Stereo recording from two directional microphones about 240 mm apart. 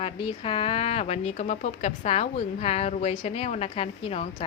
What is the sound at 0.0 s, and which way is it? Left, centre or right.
Speech, left.